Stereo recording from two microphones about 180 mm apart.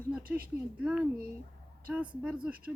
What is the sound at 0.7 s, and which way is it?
Speech, 5° right (ahead or behind).